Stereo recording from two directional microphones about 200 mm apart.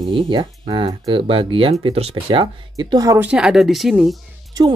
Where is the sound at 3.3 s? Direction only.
5° right (ahead or behind).